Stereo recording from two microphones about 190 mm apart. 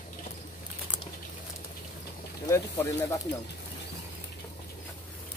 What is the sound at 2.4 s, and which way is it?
Speech, 15° left (ahead or behind).